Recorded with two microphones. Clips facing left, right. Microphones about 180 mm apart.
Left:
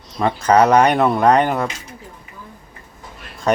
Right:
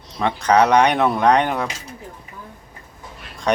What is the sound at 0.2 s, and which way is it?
Speech, 5° left (ahead or behind).